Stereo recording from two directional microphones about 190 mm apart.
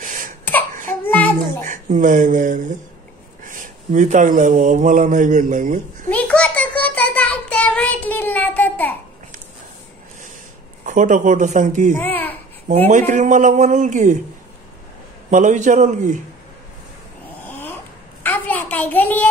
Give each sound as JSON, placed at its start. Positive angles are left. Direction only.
{"t": 0.0, "sound": "a sound", "side_deg": -45}
{"t": 1.0, "sound": "babbling", "side_deg": 10}
{"t": 1.6, "sound": "speech", "side_deg": -40}
{"t": 6.0, "sound": "child singing", "side_deg": 5}
{"t": 10.9, "sound": "speech", "side_deg": -40}
{"t": 11.9, "sound": "babbling", "side_deg": 10}
{"t": 12.6, "sound": "speech", "side_deg": -35}
{"t": 15.2, "sound": "speech", "side_deg": -40}
{"t": 17.5, "sound": "dog", "side_deg": 10}
{"t": 18.2, "sound": "a sound", "side_deg": 10}